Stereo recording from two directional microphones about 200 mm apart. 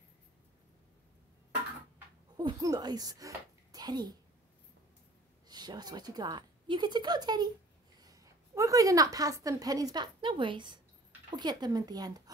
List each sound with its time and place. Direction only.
2.3 s a child's voice: 20° right (ahead or behind)
5.5 s a woman's voice: 20° right (ahead or behind)